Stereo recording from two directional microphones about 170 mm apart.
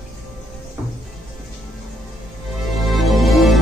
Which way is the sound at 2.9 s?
Centre (ahead or behind).